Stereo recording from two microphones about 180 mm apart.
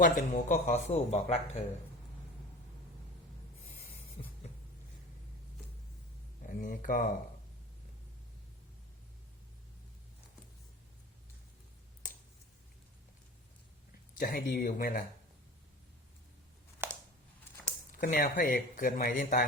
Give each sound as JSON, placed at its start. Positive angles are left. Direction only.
{"t": 0.0, "sound": "speech", "side_deg": 45}
{"t": 4.2, "sound": "a sound", "side_deg": 35}
{"t": 6.4, "sound": "speech", "side_deg": 50}
{"t": 14.2, "sound": "speech", "side_deg": 60}
{"t": 16.8, "sound": "a sound", "side_deg": -10}
{"t": 17.9, "sound": "speech", "side_deg": 50}